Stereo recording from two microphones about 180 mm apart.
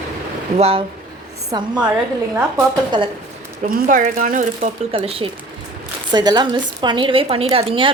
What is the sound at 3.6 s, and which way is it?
Speech, 50° right (ahead or behind).